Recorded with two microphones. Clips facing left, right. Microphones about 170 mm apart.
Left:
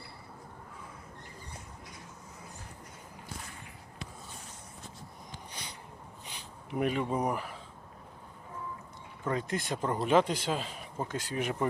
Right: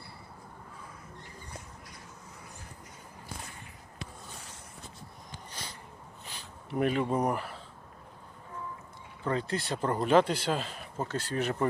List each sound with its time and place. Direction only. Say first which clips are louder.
6.2 s a sound: right 2 dB; 15° left (ahead or behind)
6.7 s speech: right 2 dB; 5° left (ahead or behind)
9.2 s speech: right 1 dB; 15° left (ahead or behind)
9.7 s speech: right 2 dB; 5° left (ahead or behind)